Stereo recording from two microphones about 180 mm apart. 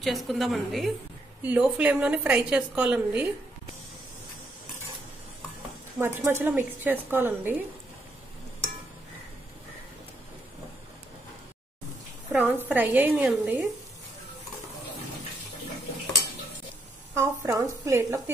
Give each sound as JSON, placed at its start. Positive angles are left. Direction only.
{"t": 0.0, "sound": "a woman's voice", "side_deg": 0}
{"t": 5.9, "sound": "a woman's voice", "side_deg": -15}
{"t": 12.3, "sound": "a woman's voice", "side_deg": -10}
{"t": 17.1, "sound": "a woman's voice", "side_deg": -15}